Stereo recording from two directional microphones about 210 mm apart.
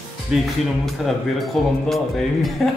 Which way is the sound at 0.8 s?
Centre (ahead or behind).